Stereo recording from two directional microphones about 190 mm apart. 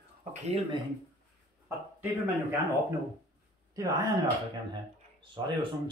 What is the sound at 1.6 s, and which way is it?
Speech, 10° right (ahead or behind).